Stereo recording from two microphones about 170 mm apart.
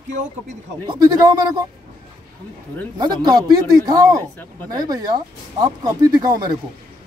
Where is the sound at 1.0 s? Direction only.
25° right (ahead or behind).